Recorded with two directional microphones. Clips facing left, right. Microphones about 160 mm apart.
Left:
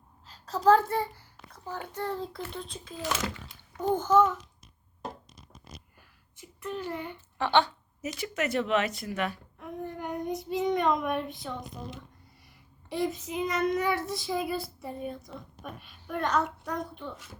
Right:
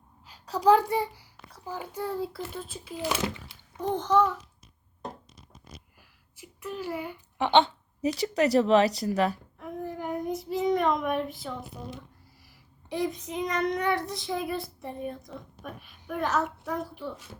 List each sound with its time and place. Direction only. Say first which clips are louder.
0.3 s a child's voice: right 1 dB; 10° right (ahead or behind)
3.9 s a child's voice: left 1 dB; centre (ahead or behind)
6.0 s a sound: right 1 dB; 10° right (ahead or behind)
7.3 s speech: right 3 dB; 20° right (ahead or behind)
8.0 s speech: right 7 dB; 35° right (ahead or behind)
9.6 s a child's voice: right 2 dB; centre (ahead or behind)